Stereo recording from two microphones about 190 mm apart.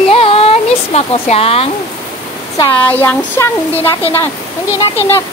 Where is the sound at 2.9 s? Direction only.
10° left (ahead or behind).